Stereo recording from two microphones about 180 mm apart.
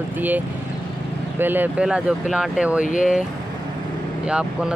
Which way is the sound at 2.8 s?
45° left (ahead or behind).